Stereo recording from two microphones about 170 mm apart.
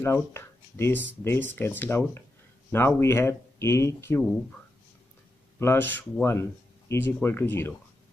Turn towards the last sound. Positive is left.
turn(degrees=10)  # may be behind; listen again after turning